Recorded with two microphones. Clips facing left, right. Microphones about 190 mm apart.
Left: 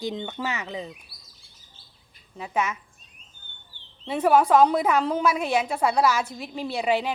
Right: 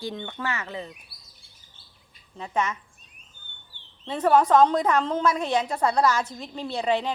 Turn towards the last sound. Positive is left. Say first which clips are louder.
# left 1 dB
turn(degrees=10)  # may be behind; listen again after turning